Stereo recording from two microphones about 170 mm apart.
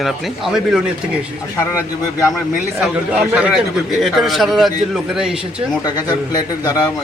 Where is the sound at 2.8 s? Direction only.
5° right (ahead or behind).